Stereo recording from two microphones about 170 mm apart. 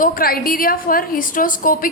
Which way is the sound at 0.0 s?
60° left (ahead or behind).